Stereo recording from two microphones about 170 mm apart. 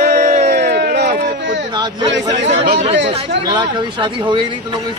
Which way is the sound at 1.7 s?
25° right (ahead or behind).